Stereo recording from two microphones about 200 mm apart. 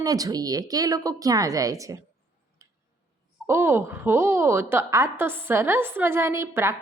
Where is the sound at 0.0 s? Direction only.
20° right (ahead or behind).